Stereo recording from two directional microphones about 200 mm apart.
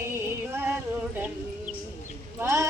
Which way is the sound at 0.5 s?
10° right (ahead or behind).